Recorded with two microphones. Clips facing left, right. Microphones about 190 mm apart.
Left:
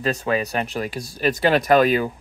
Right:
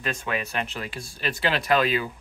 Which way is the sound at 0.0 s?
35° left (ahead or behind).